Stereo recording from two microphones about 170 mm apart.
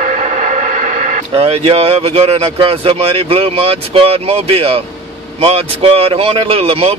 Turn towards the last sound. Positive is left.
turn(degrees=-35)  # may be behind; listen again after turning